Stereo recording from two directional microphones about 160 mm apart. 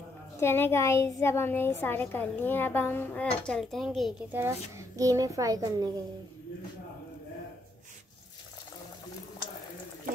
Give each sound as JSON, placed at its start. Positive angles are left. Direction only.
{"t": 0.4, "sound": "a child's voice", "side_deg": 15}
{"t": 4.3, "sound": "a child's voice", "side_deg": -15}